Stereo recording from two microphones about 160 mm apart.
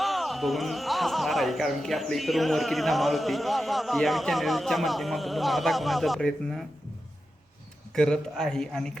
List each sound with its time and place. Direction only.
0.0 s speech: centre (ahead or behind)
7.9 s speech: 5° left (ahead or behind)